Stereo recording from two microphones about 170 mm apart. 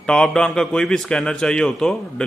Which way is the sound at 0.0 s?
5° left (ahead or behind).